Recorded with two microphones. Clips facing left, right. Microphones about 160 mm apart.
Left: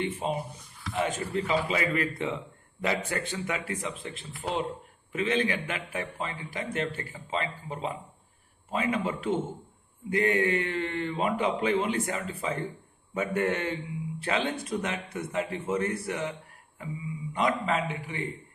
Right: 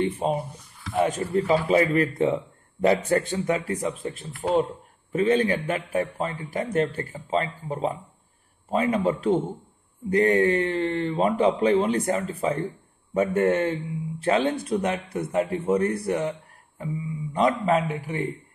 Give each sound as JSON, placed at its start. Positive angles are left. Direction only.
{"t": 0.0, "sound": "a man's voice", "side_deg": -45}